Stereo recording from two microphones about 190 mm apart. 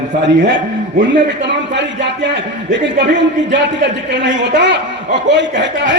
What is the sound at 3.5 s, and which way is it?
A man's voice, 65° right (ahead or behind).